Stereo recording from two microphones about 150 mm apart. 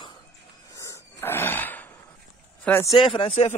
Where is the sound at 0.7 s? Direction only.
20° left (ahead or behind).